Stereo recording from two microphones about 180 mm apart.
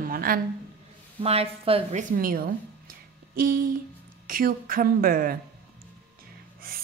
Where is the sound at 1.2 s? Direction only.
35° right (ahead or behind).